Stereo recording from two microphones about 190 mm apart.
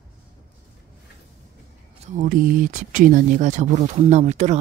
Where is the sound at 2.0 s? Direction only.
45° right (ahead or behind).